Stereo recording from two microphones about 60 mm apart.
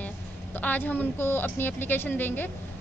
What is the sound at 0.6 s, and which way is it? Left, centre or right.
A woman's voice, left.